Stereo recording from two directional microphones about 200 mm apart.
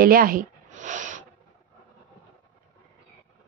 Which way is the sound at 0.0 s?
45° right (ahead or behind).